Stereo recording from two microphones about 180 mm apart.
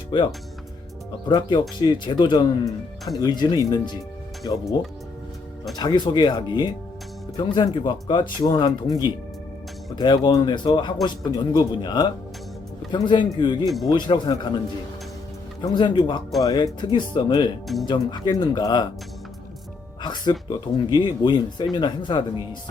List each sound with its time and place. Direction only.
0.1 s speech: 30° left (ahead or behind)
1.3 s speech: 25° left (ahead or behind)
5.7 s speech: 20° left (ahead or behind)
15.6 s speech: 25° left (ahead or behind)
20.0 s music: 25° left (ahead or behind)
20.5 s speech: 25° left (ahead or behind)